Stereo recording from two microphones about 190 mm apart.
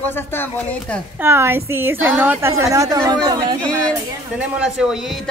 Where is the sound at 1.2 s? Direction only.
10° right (ahead or behind).